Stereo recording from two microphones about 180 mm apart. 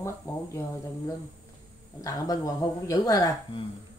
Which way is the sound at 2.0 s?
20° left (ahead or behind).